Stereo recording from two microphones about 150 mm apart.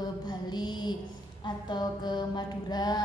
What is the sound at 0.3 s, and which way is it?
Mantra, 30° left (ahead or behind).